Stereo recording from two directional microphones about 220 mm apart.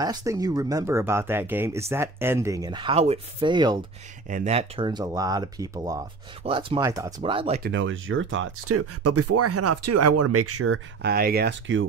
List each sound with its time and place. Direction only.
0.0 s speech: 15° right (ahead or behind)
4.3 s speech: 30° right (ahead or behind)
7.6 s speech: 60° right (ahead or behind); by 10.8 s 85° right
11.0 s speech: 45° right (ahead or behind)